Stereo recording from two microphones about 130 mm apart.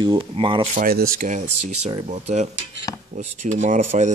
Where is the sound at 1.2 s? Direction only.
70° right (ahead or behind).